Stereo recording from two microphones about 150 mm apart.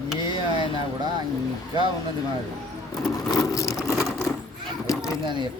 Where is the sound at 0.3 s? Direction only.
35° left (ahead or behind).